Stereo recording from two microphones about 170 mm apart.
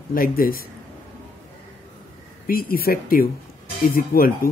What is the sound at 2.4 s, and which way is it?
Speech, 60° left (ahead or behind).